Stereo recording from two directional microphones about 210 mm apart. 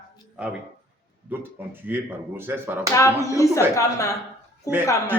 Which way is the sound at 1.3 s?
10° right (ahead or behind).